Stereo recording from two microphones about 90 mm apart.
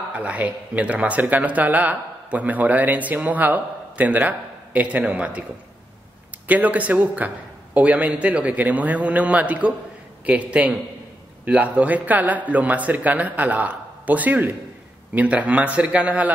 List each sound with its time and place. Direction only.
0.1 s speech: 15° right (ahead or behind)
6.4 s speech: 15° right (ahead or behind)